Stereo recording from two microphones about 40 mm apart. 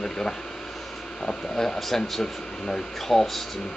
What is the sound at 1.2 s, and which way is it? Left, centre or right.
Speech, centre.